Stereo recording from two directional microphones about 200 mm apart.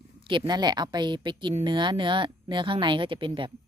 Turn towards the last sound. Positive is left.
turn(degrees=-25)  # may be behind; listen again after turning